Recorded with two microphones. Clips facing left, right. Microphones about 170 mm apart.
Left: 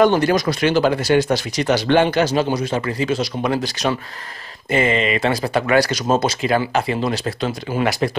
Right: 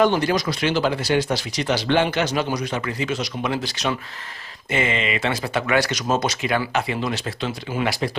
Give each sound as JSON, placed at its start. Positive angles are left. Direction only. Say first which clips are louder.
{"t": 0.0, "sound": "speech", "louder": "left 4 dB", "side_deg": 50}